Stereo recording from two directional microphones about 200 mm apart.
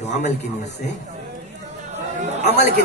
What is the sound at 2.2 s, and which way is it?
Chatter, 35° right (ahead or behind).